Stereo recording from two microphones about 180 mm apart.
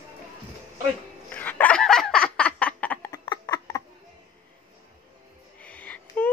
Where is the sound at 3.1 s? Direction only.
20° left (ahead or behind).